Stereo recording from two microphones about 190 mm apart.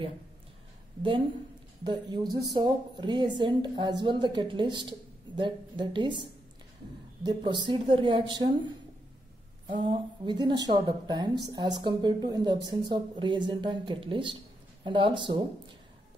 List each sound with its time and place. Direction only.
1.9 s a woman's voice: 25° right (ahead or behind)
7.2 s a woman's voice: 25° right (ahead or behind)
9.7 s a woman's voice: 25° right (ahead or behind)